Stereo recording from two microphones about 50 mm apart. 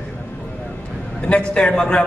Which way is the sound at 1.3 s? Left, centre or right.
Left.